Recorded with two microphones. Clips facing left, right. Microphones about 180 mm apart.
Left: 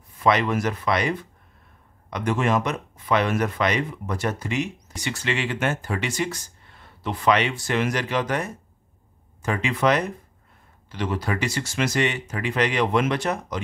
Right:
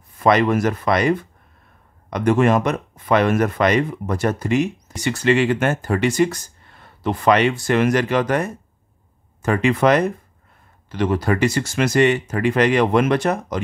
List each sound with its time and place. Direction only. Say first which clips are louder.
0.2 s speech: right 5 dB; 45° right (ahead or behind)